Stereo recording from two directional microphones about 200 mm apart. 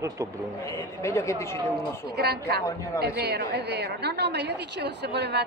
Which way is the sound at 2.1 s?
55° right (ahead or behind).